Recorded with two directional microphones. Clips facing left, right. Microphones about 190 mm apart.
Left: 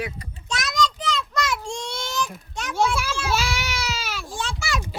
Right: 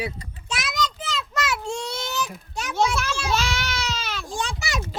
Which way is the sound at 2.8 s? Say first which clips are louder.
Even; 10° left (ahead or behind).